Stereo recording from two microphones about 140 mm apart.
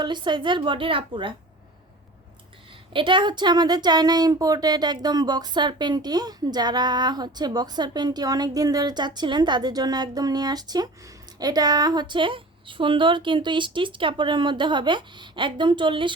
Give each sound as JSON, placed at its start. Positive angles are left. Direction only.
{"t": 0.0, "sound": "speech", "side_deg": -35}
{"t": 2.9, "sound": "speech", "side_deg": -35}